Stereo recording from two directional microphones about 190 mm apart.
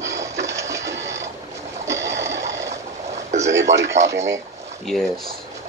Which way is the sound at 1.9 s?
15° right (ahead or behind).